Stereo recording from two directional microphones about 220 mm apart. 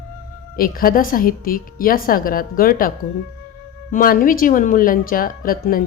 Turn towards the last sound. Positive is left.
turn(degrees=40)  # may be behind; listen again after turning